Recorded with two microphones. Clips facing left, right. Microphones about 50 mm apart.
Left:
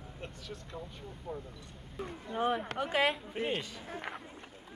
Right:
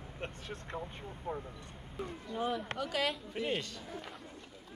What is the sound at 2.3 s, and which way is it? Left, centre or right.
Speech, left.